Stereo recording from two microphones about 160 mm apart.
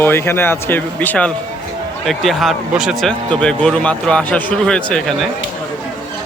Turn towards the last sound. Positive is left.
turn(degrees=0)  # may be behind; listen again after turning